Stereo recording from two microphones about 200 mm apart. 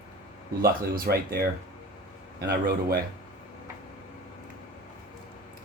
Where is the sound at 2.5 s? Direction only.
50° right (ahead or behind).